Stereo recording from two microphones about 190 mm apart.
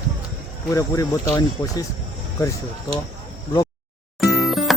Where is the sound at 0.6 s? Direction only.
15° left (ahead or behind).